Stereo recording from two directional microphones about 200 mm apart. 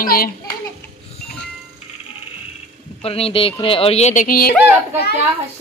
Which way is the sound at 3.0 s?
30° left (ahead or behind).